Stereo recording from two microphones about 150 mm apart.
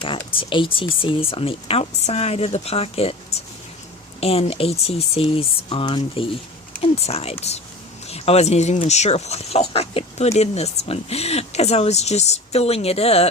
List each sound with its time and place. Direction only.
0.0 s speech: 35° left (ahead or behind)